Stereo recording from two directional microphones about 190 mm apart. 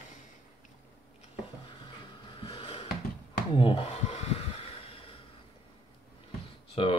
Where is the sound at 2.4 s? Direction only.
25° left (ahead or behind).